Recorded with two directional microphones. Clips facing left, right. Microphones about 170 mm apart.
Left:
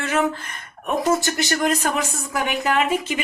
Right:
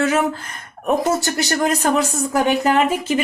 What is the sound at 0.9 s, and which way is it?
A woman's voice, 40° right (ahead or behind).